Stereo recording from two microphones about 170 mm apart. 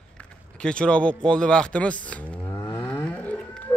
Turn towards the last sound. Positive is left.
turn(degrees=10)  # may be behind; listen again after turning